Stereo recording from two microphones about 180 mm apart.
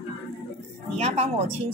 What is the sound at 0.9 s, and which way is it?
Speech, 35° right (ahead or behind).